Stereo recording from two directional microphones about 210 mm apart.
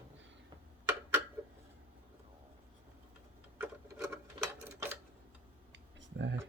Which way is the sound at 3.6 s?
10° right (ahead or behind).